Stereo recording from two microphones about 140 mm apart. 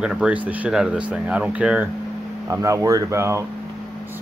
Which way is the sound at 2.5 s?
20° right (ahead or behind).